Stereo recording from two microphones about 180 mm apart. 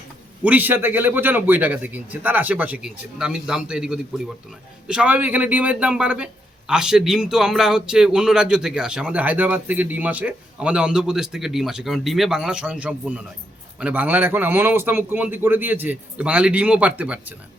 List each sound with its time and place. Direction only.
0.4 s a man's voice: 10° right (ahead or behind)